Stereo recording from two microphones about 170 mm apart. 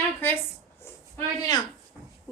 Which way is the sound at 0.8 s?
15° left (ahead or behind).